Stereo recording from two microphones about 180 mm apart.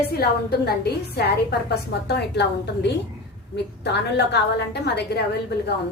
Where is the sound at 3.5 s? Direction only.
70° left (ahead or behind).